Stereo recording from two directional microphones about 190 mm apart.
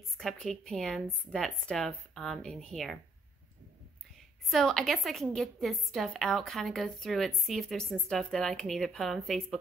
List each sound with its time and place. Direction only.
0.2 s a woman's voice: centre (ahead or behind)
4.5 s a woman's voice: centre (ahead or behind)